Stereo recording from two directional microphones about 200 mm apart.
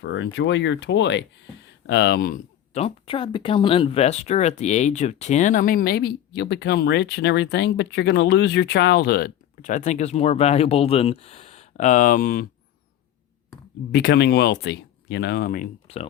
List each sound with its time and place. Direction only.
0.0 s speech: 65° left (ahead or behind)
2.7 s speech: 30° left (ahead or behind); by 12.5 s 45° left (ahead or behind)
13.9 s speech: 55° left (ahead or behind)